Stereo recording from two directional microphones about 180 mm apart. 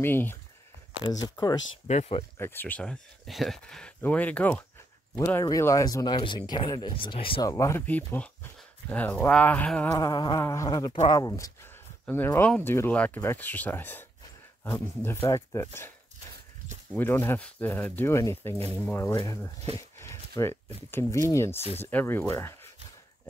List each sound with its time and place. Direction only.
0.0 s speech: 10° left (ahead or behind)
1.9 s speech: 35° left (ahead or behind)
2.3 s speech: 10° left (ahead or behind)
9.9 s speech: 20° left (ahead or behind)
16.9 s speech: 10° left (ahead or behind)